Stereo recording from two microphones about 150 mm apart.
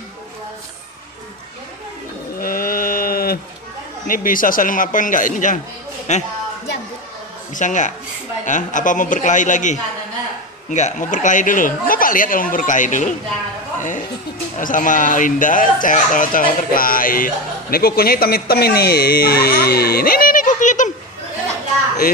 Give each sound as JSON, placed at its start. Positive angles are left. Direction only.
{"t": 2.3, "sound": "sheep", "side_deg": 70}
{"t": 4.1, "sound": "speech", "side_deg": 65}
{"t": 7.5, "sound": "speech", "side_deg": 55}